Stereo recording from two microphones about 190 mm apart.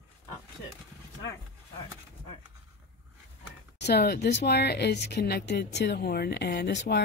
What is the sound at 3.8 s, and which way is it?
A woman's voice, 60° left (ahead or behind).